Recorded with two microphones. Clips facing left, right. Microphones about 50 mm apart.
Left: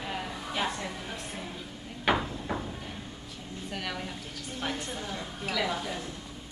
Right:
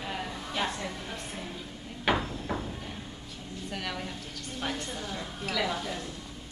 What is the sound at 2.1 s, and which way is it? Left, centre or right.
Hammer, centre.